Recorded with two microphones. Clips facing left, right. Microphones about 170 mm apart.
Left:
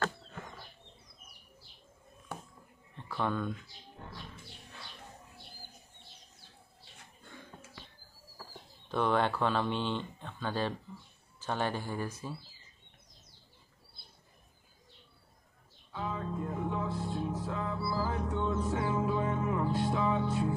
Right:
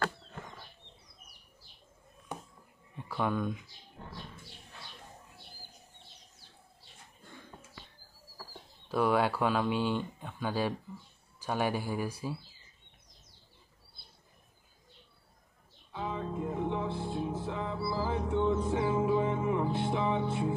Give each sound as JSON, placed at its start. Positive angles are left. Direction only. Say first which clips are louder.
{"t": 3.0, "sound": "speech", "louder": "right 2 dB", "side_deg": -10}
{"t": 8.8, "sound": "speech", "louder": "right 2 dB", "side_deg": -5}
{"t": 15.9, "sound": "music", "louder": "right 1 dB", "side_deg": -20}